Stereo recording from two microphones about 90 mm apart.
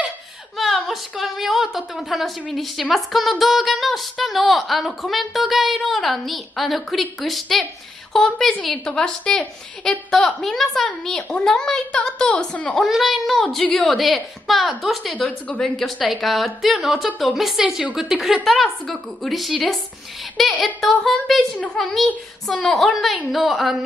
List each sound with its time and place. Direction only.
0.6 s a woman's voice: centre (ahead or behind)
12.8 s speech: centre (ahead or behind)
15.2 s a woman's voice: 15° left (ahead or behind)
15.6 s speech: 5° left (ahead or behind)